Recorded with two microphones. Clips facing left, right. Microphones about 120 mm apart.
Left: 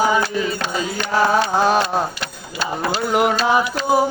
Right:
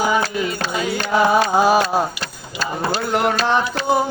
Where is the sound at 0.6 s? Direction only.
35° right (ahead or behind).